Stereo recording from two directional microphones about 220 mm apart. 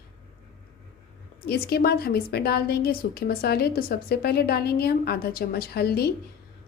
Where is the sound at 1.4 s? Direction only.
45° left (ahead or behind).